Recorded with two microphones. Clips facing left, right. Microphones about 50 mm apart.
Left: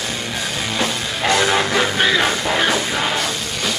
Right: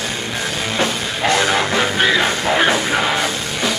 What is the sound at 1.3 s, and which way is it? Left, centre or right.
Music, centre.